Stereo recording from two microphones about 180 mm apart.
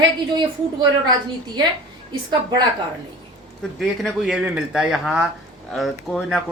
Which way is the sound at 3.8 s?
Centre (ahead or behind).